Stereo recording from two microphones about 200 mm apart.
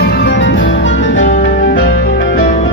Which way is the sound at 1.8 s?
70° left (ahead or behind).